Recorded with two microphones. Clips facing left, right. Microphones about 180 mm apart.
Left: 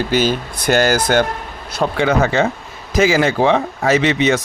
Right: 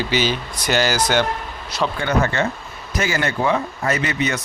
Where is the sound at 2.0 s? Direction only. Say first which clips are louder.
Left 6 dB; 90° left.